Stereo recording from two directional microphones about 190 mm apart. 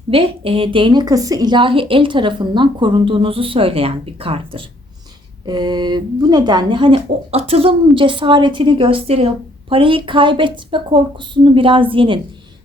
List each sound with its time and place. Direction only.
0.1 s speech: 30° right (ahead or behind)